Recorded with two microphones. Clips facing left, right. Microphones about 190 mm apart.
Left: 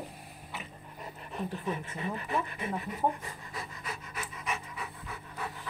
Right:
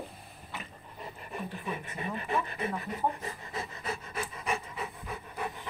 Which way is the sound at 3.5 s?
25° right (ahead or behind).